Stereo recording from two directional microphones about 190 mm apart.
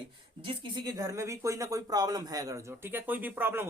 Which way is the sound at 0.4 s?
25° right (ahead or behind).